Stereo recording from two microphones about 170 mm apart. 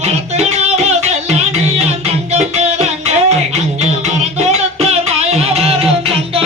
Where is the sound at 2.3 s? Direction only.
40° right (ahead or behind).